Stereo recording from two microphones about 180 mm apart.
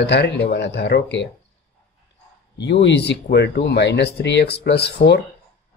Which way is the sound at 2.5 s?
75° left (ahead or behind).